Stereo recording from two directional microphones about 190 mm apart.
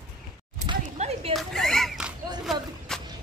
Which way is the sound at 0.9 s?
35° right (ahead or behind).